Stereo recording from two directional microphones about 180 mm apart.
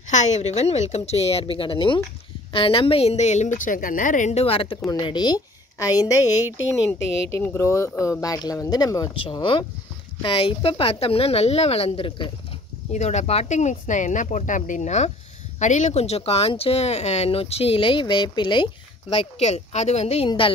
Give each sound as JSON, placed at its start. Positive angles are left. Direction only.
{"t": 0.0, "sound": "a woman's voice", "side_deg": 40}